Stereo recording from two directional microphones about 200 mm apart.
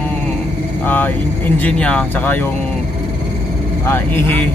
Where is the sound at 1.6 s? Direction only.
5° left (ahead or behind).